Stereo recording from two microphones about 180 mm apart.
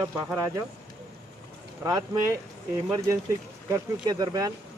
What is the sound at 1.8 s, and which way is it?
Speech, 20° right (ahead or behind).